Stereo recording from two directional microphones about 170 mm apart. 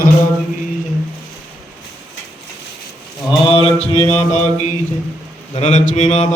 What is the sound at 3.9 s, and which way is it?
A man's voice, 40° left (ahead or behind).